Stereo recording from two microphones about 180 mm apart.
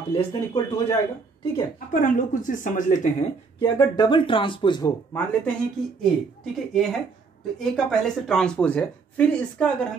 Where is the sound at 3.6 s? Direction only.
20° left (ahead or behind).